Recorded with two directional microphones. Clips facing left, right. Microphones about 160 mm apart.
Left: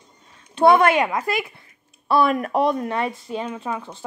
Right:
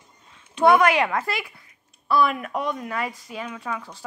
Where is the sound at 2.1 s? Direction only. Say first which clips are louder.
Left 3 dB; 35° left (ahead or behind).